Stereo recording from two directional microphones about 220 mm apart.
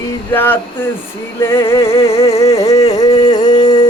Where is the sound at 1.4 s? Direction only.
10° left (ahead or behind).